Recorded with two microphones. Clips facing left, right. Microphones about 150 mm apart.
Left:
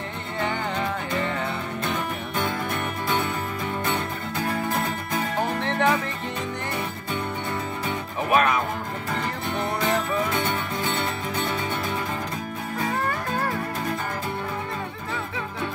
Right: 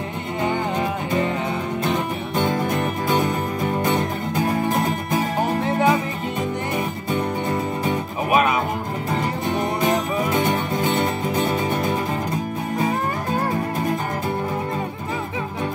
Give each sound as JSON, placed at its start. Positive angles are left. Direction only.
{"t": 0.4, "sound": "music", "side_deg": -15}
{"t": 2.7, "sound": "music", "side_deg": -35}
{"t": 5.1, "sound": "music", "side_deg": -10}
{"t": 7.8, "sound": "music", "side_deg": -15}
{"t": 9.6, "sound": "music", "side_deg": -15}
{"t": 10.4, "sound": "music", "side_deg": -35}
{"t": 12.7, "sound": "music", "side_deg": -20}